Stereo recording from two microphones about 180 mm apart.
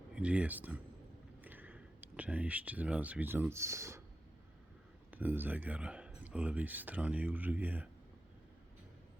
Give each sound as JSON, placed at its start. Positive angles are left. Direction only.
{"t": 0.1, "sound": "speech", "side_deg": -5}
{"t": 5.1, "sound": "speech", "side_deg": -10}